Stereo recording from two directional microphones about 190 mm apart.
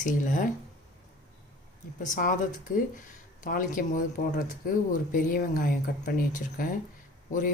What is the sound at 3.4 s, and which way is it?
Speech, 45° left (ahead or behind).